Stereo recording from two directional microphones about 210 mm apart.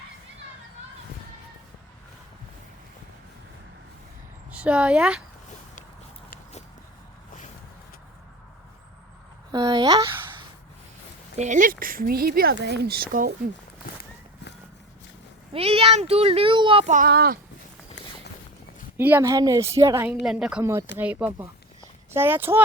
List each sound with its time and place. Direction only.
4.5 s speech: 5° right (ahead or behind)
9.5 s speech: 20° right (ahead or behind)
11.3 s speech: 35° right (ahead or behind)
13.8 s a sound: 45° left (ahead or behind)
15.5 s speech: 25° right (ahead or behind); by 17.4 s 45° right (ahead or behind)
18.9 s a woman's voice: 10° right (ahead or behind)